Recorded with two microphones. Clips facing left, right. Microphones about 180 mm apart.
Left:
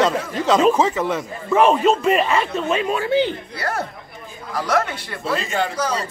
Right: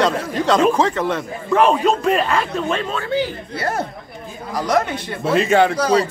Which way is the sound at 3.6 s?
20° right (ahead or behind).